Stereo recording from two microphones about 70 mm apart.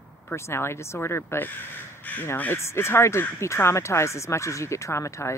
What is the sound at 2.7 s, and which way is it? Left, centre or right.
Speech, left.